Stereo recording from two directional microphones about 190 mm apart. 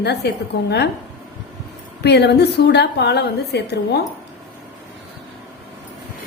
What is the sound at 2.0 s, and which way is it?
A woman's voice, 60° left (ahead or behind).